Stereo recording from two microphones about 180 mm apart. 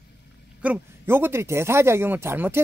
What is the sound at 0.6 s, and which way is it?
Speech, 10° right (ahead or behind).